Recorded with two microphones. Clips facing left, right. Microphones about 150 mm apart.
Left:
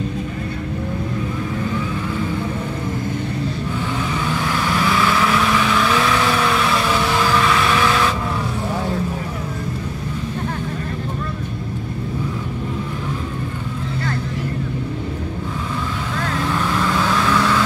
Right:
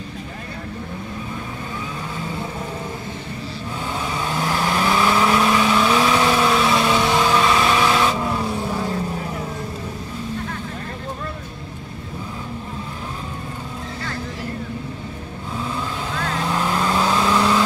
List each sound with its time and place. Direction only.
4.9 s vehicle: 25° right (ahead or behind)
16.8 s vehicle: 25° right (ahead or behind)